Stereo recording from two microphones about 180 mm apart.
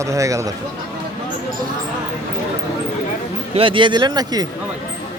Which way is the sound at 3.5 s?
30° right (ahead or behind).